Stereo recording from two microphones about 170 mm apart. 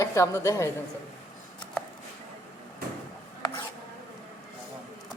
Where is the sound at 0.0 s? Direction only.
15° left (ahead or behind).